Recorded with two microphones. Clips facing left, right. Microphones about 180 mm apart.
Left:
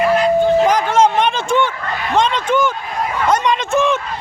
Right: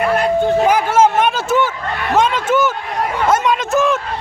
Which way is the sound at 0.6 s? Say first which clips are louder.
Right 1 dB; 10° right (ahead or behind).